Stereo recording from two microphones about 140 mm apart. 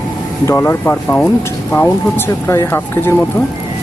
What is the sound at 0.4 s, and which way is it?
Speech, 15° left (ahead or behind).